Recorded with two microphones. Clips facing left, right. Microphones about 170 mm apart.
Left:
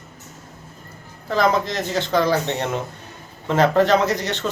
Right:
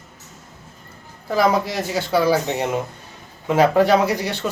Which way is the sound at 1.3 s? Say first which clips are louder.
Right 1 dB; 10° right (ahead or behind).